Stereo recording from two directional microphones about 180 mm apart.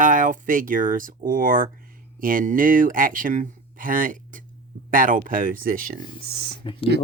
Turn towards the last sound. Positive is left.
turn(degrees=30)  # may be behind; listen again after turning